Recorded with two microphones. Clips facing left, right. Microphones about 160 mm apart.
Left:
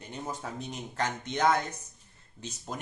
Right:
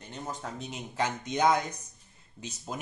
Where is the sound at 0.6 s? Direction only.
5° right (ahead or behind).